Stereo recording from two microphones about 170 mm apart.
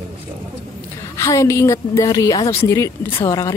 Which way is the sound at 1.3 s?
20° left (ahead or behind).